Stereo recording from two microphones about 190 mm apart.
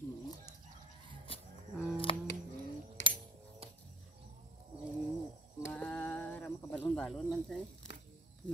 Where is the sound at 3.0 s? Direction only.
75° left (ahead or behind).